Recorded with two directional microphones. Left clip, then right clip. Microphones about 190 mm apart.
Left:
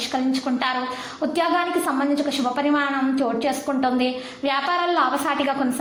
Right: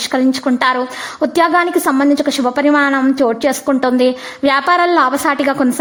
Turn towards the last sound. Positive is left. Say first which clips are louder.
# right 8 dB
turn(degrees=-40)  # may be behind; listen again after turning